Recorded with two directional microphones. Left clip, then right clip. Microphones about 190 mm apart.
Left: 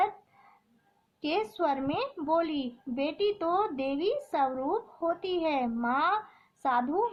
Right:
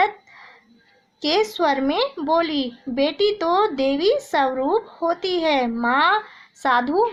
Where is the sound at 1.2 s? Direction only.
20° right (ahead or behind).